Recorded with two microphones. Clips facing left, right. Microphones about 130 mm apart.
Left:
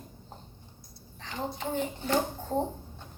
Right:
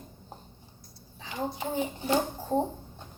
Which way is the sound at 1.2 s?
10° right (ahead or behind).